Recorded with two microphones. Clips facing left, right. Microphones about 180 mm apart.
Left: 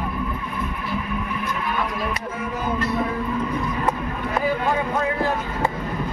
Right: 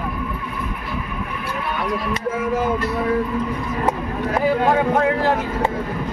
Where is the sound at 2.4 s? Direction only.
90° right.